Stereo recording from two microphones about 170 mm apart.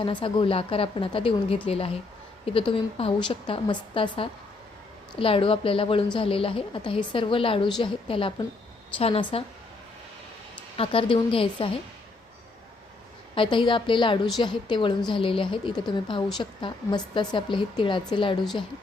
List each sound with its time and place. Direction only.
0.0 s a woman's voice: 30° left (ahead or behind)
10.8 s a woman's voice: 30° left (ahead or behind)
13.3 s a woman's voice: 30° left (ahead or behind)